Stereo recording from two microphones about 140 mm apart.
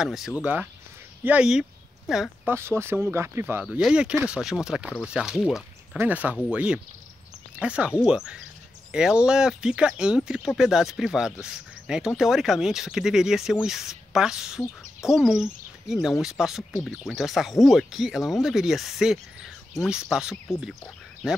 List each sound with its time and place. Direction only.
0.0 s speech: 5° right (ahead or behind)
2.4 s speech: 15° right (ahead or behind)